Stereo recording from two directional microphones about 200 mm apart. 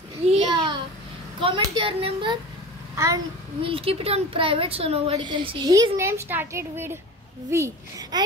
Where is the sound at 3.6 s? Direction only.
30° right (ahead or behind).